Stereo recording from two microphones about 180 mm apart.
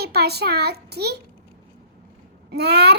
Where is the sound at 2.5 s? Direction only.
65° right (ahead or behind).